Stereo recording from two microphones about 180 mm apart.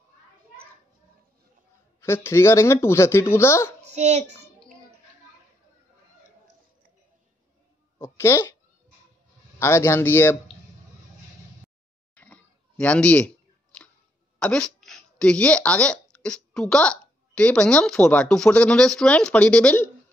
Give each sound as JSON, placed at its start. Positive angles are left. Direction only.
{"t": 2.0, "sound": "speech", "side_deg": 15}
{"t": 3.8, "sound": "child singing", "side_deg": -40}
{"t": 8.0, "sound": "speech", "side_deg": 15}
{"t": 9.6, "sound": "speech", "side_deg": 15}
{"t": 12.2, "sound": "a sound", "side_deg": 5}
{"t": 14.4, "sound": "speech", "side_deg": 5}